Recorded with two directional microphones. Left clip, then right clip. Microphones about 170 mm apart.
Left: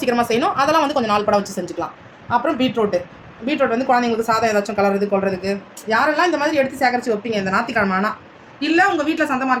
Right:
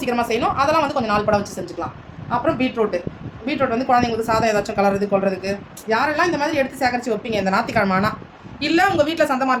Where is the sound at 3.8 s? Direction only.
15° right (ahead or behind).